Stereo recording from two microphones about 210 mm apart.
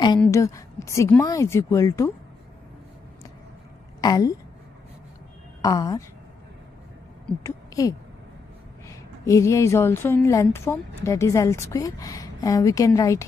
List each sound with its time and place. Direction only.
0.2 s a woman's voice: 15° left (ahead or behind)
4.0 s speech: 20° left (ahead or behind)
5.6 s a woman's voice: 15° left (ahead or behind)
7.4 s a sound: 15° left (ahead or behind)
8.8 s a woman's voice: 15° left (ahead or behind)